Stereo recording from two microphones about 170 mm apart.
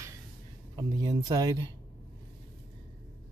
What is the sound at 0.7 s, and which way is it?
Speech, 25° right (ahead or behind).